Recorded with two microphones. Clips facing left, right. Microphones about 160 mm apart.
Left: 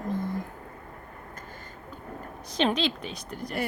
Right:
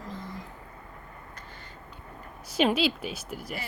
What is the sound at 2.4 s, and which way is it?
A woman's voice, 10° right (ahead or behind).